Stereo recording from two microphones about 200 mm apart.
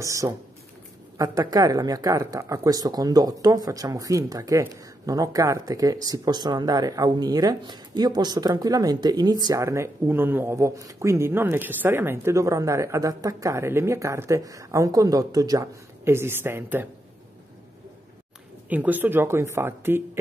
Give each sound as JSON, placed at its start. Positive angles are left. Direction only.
{"t": 0.0, "sound": "speech", "side_deg": -15}
{"t": 18.7, "sound": "speech", "side_deg": -10}